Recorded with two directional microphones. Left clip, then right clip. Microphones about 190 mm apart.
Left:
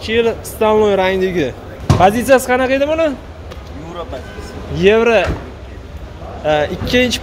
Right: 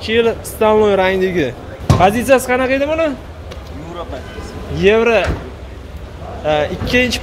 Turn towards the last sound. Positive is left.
turn(degrees=20)  # may be behind; listen again after turning